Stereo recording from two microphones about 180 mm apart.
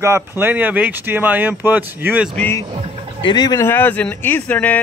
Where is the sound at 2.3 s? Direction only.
10° left (ahead or behind).